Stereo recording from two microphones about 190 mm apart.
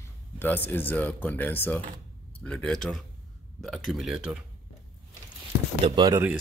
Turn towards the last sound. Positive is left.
turn(degrees=-25)  # may be behind; listen again after turning